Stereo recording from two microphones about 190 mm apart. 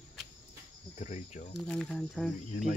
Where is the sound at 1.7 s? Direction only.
5° left (ahead or behind).